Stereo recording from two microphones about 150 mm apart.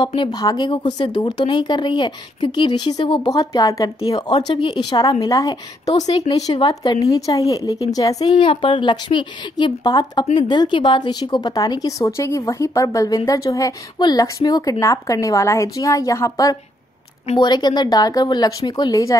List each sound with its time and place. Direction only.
0.0 s a woman's voice: 30° left (ahead or behind)
4.3 s a woman's voice: 35° left (ahead or behind)